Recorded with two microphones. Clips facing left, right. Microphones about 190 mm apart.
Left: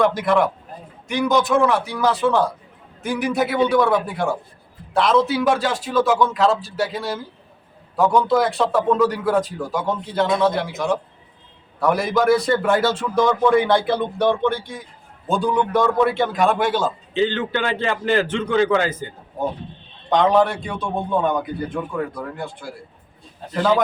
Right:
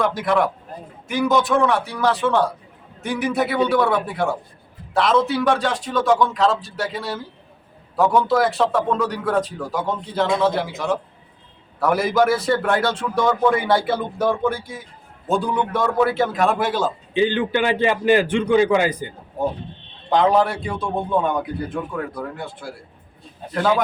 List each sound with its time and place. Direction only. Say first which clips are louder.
0.0 s a man's voice: left 2 dB; centre (ahead or behind)
17.2 s a man's voice: right 2 dB; 15° right (ahead or behind)